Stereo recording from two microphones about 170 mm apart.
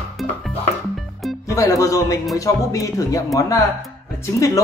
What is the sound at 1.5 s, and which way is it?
Speech, 20° left (ahead or behind).